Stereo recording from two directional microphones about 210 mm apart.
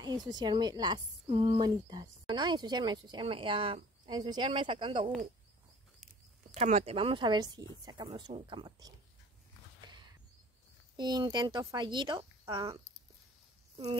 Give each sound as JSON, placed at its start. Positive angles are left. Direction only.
{"t": 0.0, "sound": "speech", "side_deg": -20}
{"t": 6.5, "sound": "speech", "side_deg": -30}
{"t": 11.0, "sound": "speech", "side_deg": -20}